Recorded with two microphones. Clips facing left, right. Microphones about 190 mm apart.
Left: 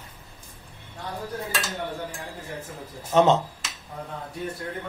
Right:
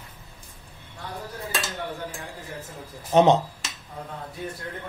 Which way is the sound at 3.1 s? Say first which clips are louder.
Right 1 dB; 15° right (ahead or behind).